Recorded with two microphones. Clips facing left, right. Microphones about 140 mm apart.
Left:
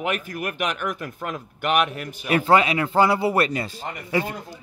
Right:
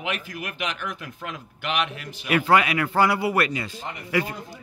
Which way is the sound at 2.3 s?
30° left (ahead or behind).